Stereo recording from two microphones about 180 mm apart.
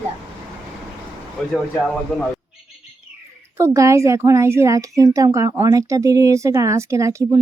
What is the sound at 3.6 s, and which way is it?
Speech, 15° right (ahead or behind).